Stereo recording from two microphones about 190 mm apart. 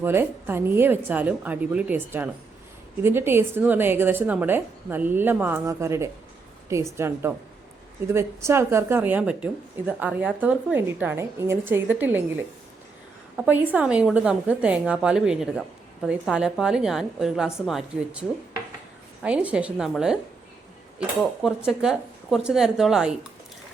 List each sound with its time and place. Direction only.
0.0 s speech: 10° right (ahead or behind)
13.3 s a woman's voice: 10° right (ahead or behind)